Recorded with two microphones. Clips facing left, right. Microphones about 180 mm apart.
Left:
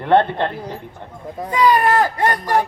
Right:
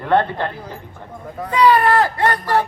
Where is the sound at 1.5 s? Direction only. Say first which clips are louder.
Right 1 dB; 15° left (ahead or behind).